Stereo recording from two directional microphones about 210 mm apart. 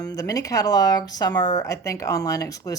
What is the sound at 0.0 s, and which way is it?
Speech, 15° left (ahead or behind).